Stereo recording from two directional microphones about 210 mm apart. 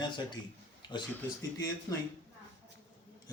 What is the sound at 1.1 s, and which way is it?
Speech, 10° left (ahead or behind).